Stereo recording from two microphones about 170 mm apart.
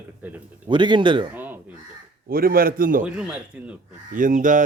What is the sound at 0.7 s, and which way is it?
Speech, 25° right (ahead or behind).